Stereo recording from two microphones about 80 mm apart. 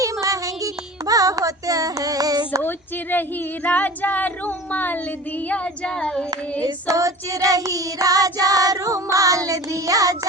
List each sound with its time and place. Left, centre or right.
0.0 s music: right
2.6 s speech: left
5.5 s child singing: centre
6.8 s child singing: right